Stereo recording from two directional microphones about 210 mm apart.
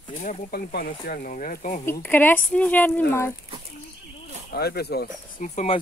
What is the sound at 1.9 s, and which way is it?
A woman's voice, 10° left (ahead or behind).